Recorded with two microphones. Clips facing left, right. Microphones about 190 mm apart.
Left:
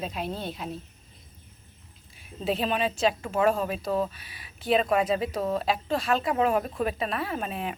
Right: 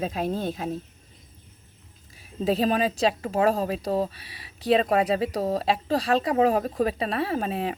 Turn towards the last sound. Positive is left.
turn(degrees=-30)  # may be behind; listen again after turning